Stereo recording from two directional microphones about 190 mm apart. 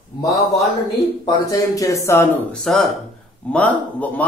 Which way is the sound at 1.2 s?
20° left (ahead or behind).